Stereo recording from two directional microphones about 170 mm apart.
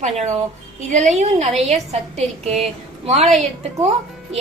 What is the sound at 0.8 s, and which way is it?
A woman's voice, 45° right (ahead or behind).